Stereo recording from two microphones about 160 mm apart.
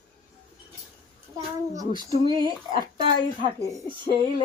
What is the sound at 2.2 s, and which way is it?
Speech, 25° right (ahead or behind).